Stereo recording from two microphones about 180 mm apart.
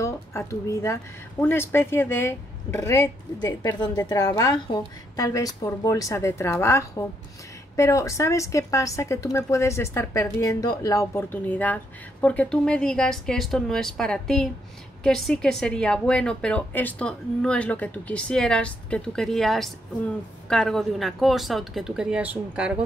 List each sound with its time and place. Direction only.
0.0 s a woman's voice: 15° left (ahead or behind); by 22.8 s 5° right (ahead or behind)